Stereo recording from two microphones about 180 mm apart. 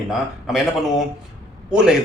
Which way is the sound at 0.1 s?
5° right (ahead or behind).